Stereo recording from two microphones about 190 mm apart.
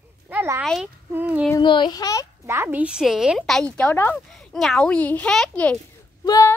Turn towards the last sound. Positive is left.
turn(degrees=20)  # may be behind; listen again after turning